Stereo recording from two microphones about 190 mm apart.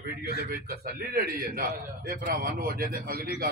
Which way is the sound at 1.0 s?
55° right (ahead or behind).